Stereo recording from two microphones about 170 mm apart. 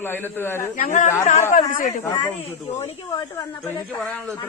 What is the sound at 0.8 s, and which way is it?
Speech, 50° left (ahead or behind).